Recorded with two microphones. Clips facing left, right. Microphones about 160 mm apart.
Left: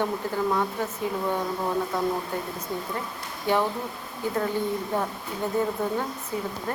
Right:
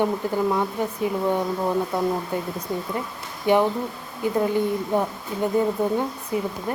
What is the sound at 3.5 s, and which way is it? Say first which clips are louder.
A woman's voice: right 5 dB; 15° right (ahead or behind).